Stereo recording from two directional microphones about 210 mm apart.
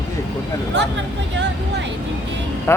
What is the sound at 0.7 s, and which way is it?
Speech, 55° right (ahead or behind).